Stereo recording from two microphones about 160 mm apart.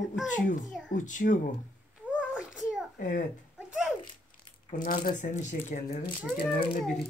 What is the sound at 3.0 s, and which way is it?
Speech, 55° left (ahead or behind).